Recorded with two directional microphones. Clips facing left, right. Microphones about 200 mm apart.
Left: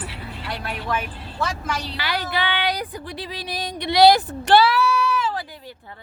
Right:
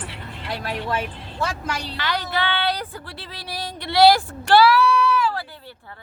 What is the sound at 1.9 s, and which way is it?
A woman's voice, 10° left (ahead or behind).